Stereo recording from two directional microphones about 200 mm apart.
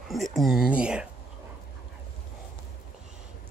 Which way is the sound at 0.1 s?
Centre (ahead or behind).